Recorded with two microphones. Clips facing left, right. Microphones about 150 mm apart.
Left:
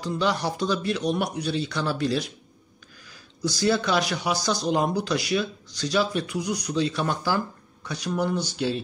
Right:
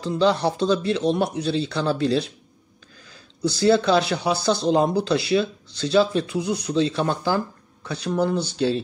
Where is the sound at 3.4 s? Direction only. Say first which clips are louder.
Right 5 dB; 30° right (ahead or behind).